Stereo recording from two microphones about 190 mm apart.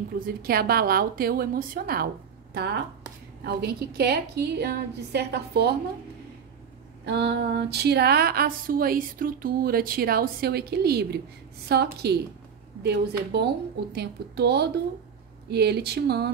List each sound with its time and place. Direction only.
0.2 s a woman's voice: 50° right (ahead or behind)
7.1 s speech: 60° right (ahead or behind)